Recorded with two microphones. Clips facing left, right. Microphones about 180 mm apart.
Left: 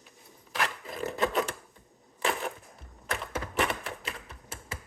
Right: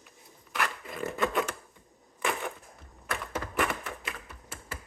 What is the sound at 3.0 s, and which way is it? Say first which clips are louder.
Typewriter: even; 25° left (ahead or behind).